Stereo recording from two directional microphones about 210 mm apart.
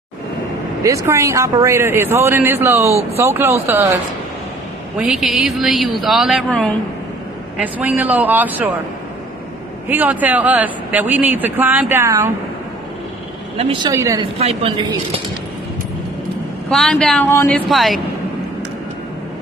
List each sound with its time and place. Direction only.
0.8 s a man's voice: 15° right (ahead or behind)
4.9 s a woman's voice: 5° right (ahead or behind)
9.8 s a man's voice: 10° right (ahead or behind)
13.6 s a man's voice: 25° right (ahead or behind)
14.4 s speech: 30° right (ahead or behind)
16.7 s a woman's voice: 5° left (ahead or behind)
17.6 s a woman's voice: centre (ahead or behind)